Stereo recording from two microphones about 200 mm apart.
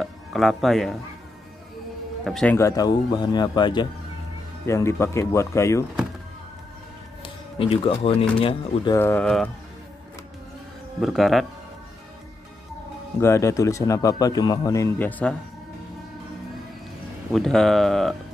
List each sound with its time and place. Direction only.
0.0 s speech: centre (ahead or behind)
2.2 s speech: centre (ahead or behind)
2.5 s speech: 15° left (ahead or behind)
7.5 s speech: 30° left (ahead or behind)
8.9 s speech: 10° left (ahead or behind)
11.0 s speech: centre (ahead or behind)
13.2 s speech: 15° left (ahead or behind)
17.3 s speech: centre (ahead or behind)